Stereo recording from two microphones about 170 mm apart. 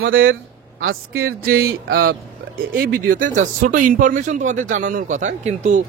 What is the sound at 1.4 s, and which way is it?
Speech, 65° right (ahead or behind).